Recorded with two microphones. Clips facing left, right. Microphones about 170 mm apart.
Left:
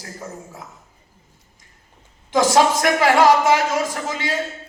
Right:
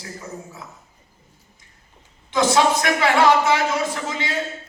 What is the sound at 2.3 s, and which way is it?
A woman's voice, 45° left (ahead or behind).